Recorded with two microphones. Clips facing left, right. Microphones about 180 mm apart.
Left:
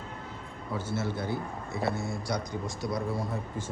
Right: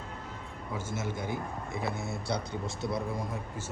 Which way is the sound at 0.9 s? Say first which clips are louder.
Left 3 dB; 15° right (ahead or behind).